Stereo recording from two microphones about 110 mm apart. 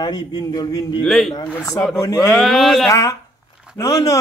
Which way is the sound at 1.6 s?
30° left (ahead or behind).